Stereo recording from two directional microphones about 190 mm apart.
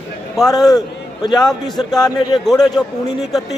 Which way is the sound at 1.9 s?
20° left (ahead or behind).